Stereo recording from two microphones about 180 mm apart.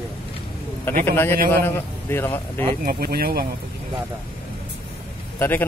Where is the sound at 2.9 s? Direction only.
55° right (ahead or behind).